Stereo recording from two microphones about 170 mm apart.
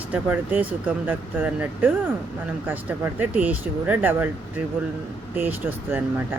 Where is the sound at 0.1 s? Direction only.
10° right (ahead or behind).